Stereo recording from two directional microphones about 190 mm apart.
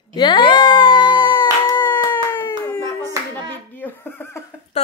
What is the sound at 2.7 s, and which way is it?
Hands, 10° left (ahead or behind).